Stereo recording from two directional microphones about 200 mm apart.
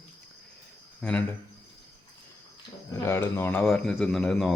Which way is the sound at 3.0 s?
15° left (ahead or behind).